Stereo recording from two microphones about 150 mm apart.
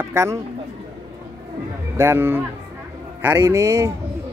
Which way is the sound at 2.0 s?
15° right (ahead or behind).